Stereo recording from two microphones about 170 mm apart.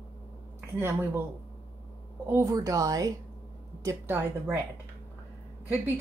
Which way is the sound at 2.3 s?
20° right (ahead or behind).